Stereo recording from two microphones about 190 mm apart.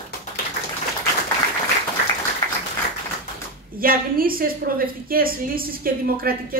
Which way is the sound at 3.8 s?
50° right (ahead or behind).